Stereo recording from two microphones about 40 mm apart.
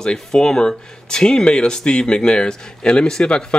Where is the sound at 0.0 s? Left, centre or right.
Centre.